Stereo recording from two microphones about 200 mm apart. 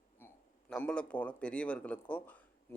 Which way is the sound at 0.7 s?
5° left (ahead or behind).